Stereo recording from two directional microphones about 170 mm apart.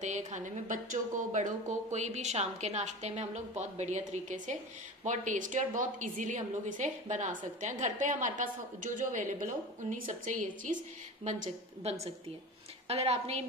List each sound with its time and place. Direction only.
0.0 s a woman's voice: 45° right (ahead or behind)